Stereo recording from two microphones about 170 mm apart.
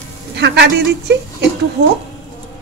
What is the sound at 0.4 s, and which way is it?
Speech, 80° right.